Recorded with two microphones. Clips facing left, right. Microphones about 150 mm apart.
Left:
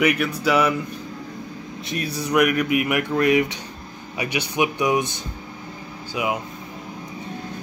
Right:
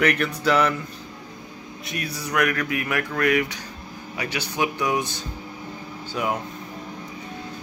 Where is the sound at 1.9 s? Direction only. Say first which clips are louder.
Left 5 dB; 25° left (ahead or behind).